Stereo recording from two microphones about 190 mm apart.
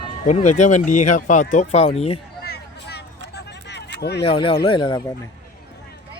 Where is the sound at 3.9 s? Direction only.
60° left (ahead or behind).